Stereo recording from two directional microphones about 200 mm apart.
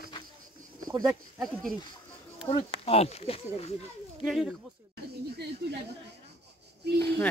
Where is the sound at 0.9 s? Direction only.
20° right (ahead or behind).